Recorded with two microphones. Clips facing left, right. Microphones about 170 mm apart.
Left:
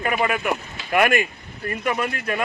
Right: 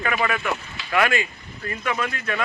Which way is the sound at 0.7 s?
50° left (ahead or behind).